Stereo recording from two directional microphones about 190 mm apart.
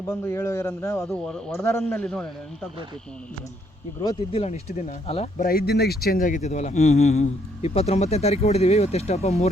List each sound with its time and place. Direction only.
0.1 s a man's voice: 15° left (ahead or behind)
1.0 s speech: 5° left (ahead or behind)
1.5 s a man's voice: 15° left (ahead or behind)
4.3 s speech: 35° left (ahead or behind)
5.4 s speech: 55° left (ahead or behind); by 9.5 s 35° left (ahead or behind)